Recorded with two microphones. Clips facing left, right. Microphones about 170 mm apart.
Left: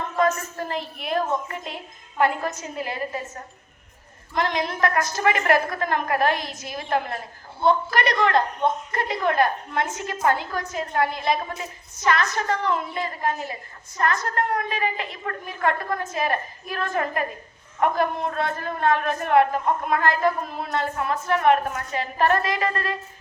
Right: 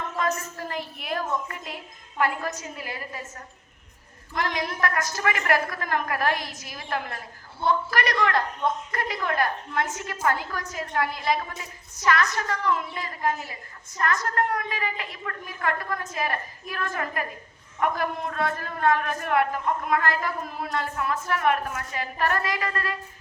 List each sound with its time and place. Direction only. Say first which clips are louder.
0.2 s a woman's voice: left 6 dB; 30° left (ahead or behind)
4.4 s a woman's voice: left 4 dB; 25° left (ahead or behind)